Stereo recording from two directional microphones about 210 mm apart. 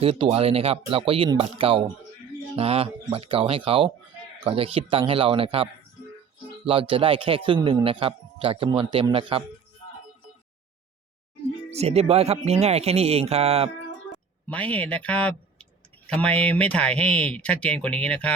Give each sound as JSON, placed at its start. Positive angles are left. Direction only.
{"t": 0.0, "sound": "a man's voice", "side_deg": -25}
{"t": 6.7, "sound": "a man's voice", "side_deg": -25}
{"t": 11.7, "sound": "a man's voice", "side_deg": -30}
{"t": 14.4, "sound": "speech", "side_deg": 5}